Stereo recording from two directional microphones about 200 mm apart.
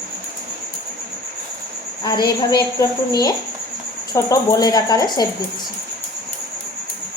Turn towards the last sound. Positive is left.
turn(degrees=20)  # may be behind; listen again after turning